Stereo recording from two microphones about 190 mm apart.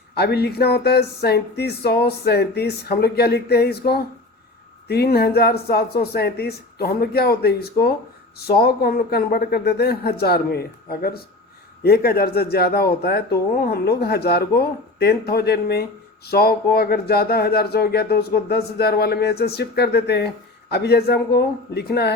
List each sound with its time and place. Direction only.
0.2 s speech: 60° left (ahead or behind)